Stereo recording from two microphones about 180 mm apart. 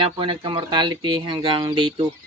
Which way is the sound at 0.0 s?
30° right (ahead or behind).